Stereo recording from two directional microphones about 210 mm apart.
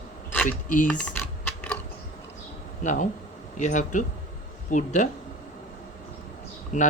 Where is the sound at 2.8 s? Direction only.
35° left (ahead or behind).